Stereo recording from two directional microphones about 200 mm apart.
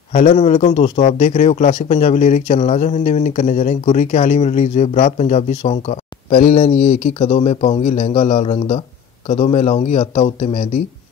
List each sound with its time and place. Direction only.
0.1 s a man's voice: 35° left (ahead or behind)